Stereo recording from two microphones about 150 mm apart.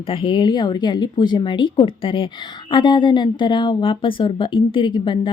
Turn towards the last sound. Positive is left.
turn(degrees=35)  # may be behind; listen again after turning